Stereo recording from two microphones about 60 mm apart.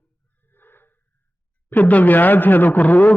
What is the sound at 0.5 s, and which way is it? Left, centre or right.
Wheeze, left.